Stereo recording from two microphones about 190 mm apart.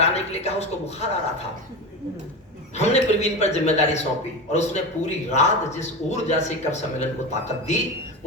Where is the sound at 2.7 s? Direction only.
35° left (ahead or behind).